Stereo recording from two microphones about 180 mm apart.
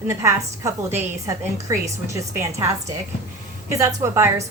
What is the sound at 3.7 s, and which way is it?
Speech, 15° right (ahead or behind).